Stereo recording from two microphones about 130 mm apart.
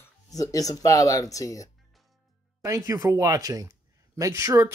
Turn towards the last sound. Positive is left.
turn(degrees=-25)  # may be behind; listen again after turning